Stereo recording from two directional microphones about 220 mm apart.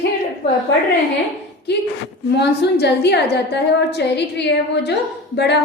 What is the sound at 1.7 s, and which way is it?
A woman's voice, 50° left (ahead or behind).